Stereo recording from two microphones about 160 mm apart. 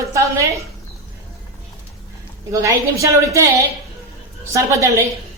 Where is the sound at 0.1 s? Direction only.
20° right (ahead or behind).